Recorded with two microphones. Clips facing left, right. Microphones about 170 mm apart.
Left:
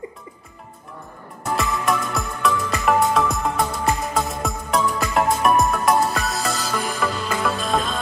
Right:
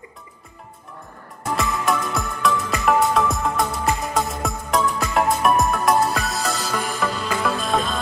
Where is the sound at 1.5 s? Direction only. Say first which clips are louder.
Even; centre (ahead or behind).